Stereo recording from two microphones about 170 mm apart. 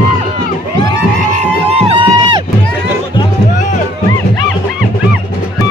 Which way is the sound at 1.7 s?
30° right (ahead or behind).